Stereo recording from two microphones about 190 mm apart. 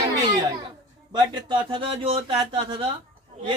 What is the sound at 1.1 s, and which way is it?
Speech, 25° right (ahead or behind).